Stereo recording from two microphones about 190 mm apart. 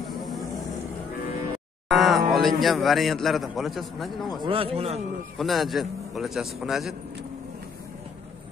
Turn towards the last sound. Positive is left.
turn(degrees=0)  # may be behind; listen again after turning